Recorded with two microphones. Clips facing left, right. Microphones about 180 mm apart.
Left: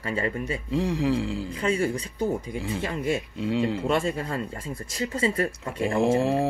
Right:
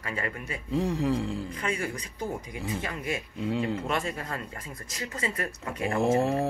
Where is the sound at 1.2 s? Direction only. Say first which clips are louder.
Left 2 dB; 90° left.